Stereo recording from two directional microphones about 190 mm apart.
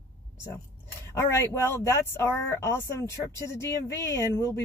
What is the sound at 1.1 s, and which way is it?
Speech, 15° left (ahead or behind).